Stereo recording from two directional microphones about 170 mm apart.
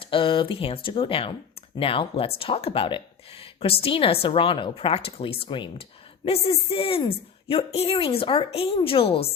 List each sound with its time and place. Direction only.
0.0 s a woman's voice: 30° left (ahead or behind)